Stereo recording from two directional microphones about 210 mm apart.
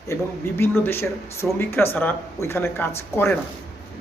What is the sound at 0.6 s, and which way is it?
Speech, 10° left (ahead or behind).